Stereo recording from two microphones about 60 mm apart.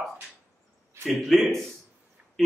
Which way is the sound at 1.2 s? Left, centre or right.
Centre.